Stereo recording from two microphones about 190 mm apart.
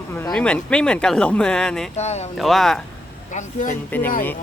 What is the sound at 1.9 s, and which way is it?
Speech, 35° left (ahead or behind).